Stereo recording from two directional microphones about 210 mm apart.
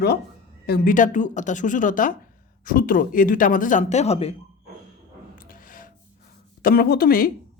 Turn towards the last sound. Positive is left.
turn(degrees=45)  # may be behind; listen again after turning